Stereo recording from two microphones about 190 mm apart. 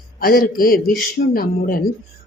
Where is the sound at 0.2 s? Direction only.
50° left (ahead or behind).